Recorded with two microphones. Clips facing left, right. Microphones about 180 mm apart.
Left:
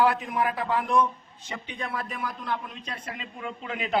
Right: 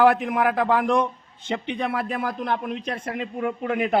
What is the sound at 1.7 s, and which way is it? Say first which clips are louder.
A man's voice: right 5 dB; 65° right (ahead or behind).